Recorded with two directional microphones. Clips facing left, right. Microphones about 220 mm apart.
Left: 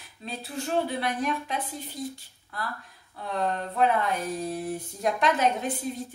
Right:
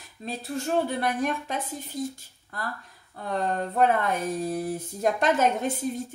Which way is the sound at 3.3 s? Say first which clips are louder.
Right 1 dB; 45° right (ahead or behind).